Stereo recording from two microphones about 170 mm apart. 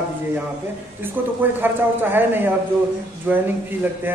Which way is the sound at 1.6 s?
10° right (ahead or behind).